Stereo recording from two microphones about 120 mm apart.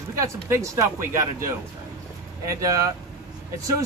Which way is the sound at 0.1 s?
25° right (ahead or behind).